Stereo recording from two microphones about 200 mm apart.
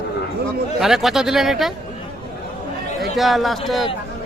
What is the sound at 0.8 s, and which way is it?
Speech, centre (ahead or behind).